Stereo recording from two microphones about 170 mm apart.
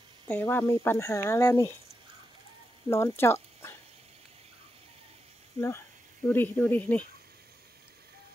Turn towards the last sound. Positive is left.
turn(degrees=10)  # may be behind; listen again after turning